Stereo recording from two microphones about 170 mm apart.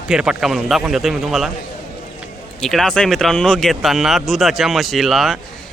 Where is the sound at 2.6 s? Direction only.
5° left (ahead or behind).